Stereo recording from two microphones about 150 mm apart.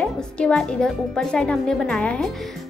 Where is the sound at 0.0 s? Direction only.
5° left (ahead or behind).